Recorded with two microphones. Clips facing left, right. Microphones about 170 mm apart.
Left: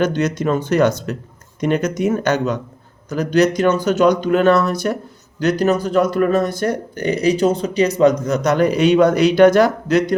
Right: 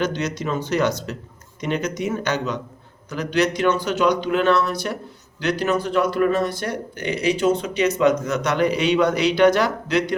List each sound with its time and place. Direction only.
0.0 s speech: 50° left (ahead or behind)